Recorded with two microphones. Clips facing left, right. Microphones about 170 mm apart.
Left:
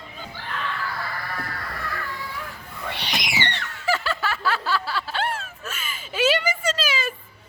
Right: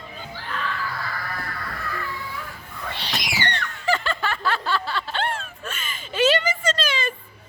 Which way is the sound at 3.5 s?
5° left (ahead or behind).